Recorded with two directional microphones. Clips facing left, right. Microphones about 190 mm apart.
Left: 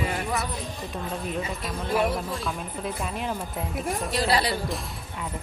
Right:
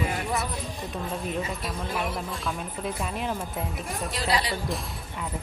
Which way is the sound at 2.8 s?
Centre (ahead or behind).